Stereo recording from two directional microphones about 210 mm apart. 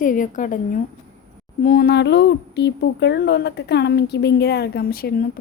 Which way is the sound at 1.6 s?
45° left (ahead or behind).